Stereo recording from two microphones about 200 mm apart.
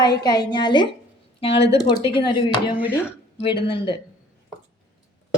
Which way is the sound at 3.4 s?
25° left (ahead or behind).